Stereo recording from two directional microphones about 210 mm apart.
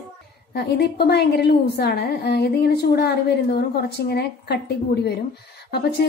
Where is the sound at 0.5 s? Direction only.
50° left (ahead or behind).